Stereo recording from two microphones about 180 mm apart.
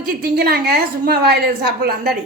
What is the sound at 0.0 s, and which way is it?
A woman's voice, 60° right (ahead or behind).